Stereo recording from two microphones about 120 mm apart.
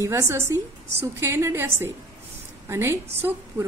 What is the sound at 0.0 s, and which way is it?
A woman's voice, 25° right (ahead or behind).